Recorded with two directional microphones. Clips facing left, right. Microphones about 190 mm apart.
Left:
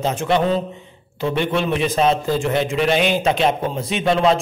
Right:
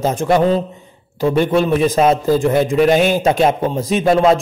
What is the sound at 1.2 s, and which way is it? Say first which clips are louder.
A man's voice: right 6 dB; 40° right (ahead or behind).